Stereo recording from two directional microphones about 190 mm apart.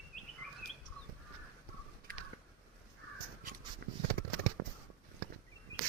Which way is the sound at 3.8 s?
60° right (ahead or behind).